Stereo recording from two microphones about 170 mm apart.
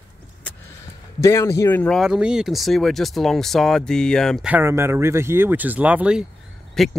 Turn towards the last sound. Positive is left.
turn(degrees=0)  # may be behind; listen again after turning